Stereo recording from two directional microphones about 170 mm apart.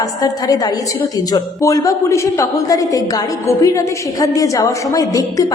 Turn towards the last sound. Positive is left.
turn(degrees=20)  # may be behind; listen again after turning